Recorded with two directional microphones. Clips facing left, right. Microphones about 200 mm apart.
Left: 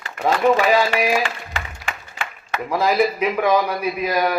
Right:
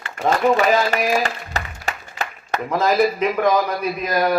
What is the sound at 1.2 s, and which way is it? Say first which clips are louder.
Music: right 1 dB; 40° right (ahead or behind).